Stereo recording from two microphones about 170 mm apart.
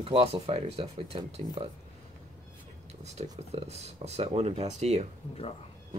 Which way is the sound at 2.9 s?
40° right (ahead or behind).